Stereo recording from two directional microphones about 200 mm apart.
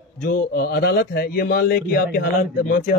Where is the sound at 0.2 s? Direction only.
50° left (ahead or behind).